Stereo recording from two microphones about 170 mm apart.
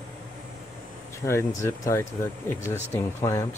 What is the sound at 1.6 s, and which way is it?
Speech, 15° left (ahead or behind).